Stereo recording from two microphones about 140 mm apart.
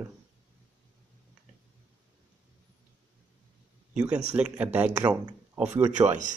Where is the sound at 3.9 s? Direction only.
5° right (ahead or behind).